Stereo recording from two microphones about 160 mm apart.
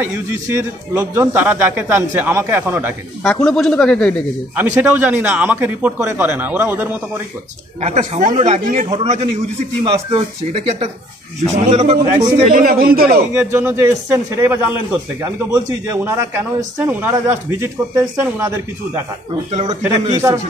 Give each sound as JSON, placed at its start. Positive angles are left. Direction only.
{"t": 0.0, "sound": "speech", "side_deg": -15}
{"t": 3.3, "sound": "speech", "side_deg": 5}
{"t": 4.6, "sound": "speech", "side_deg": -10}
{"t": 7.8, "sound": "speech", "side_deg": -45}
{"t": 8.8, "sound": "speech", "side_deg": -40}
{"t": 12.4, "sound": "speech", "side_deg": -65}
{"t": 13.3, "sound": "speech", "side_deg": -15}
{"t": 19.7, "sound": "speech", "side_deg": -35}